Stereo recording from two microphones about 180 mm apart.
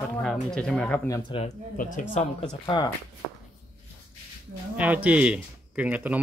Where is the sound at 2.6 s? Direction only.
25° left (ahead or behind).